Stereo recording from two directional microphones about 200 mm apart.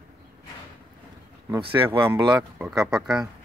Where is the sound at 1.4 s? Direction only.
20° right (ahead or behind).